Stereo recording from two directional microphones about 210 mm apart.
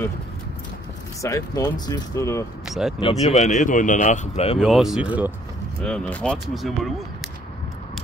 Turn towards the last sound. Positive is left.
turn(degrees=0)  # may be behind; listen again after turning